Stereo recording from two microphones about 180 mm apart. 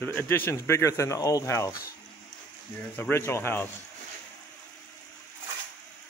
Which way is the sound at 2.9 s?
10° left (ahead or behind).